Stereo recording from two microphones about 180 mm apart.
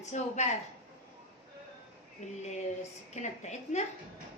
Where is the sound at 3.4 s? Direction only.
40° left (ahead or behind).